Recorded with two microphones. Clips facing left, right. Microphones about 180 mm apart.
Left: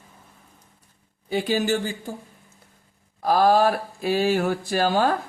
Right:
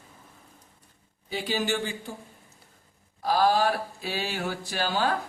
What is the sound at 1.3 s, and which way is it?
Speech, 50° left (ahead or behind).